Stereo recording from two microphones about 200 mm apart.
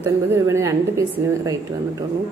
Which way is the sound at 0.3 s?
15° right (ahead or behind).